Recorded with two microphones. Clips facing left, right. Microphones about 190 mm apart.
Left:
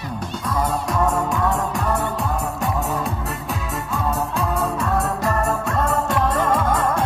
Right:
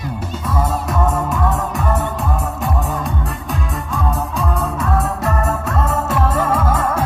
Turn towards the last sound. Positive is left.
turn(degrees=-5)  # may be behind; listen again after turning